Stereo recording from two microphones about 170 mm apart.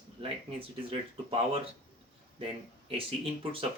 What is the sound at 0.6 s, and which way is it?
Speech, 35° right (ahead or behind).